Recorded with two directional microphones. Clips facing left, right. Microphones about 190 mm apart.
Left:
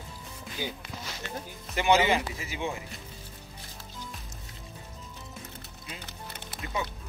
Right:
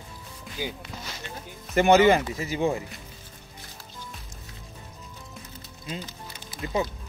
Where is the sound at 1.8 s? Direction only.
50° right (ahead or behind).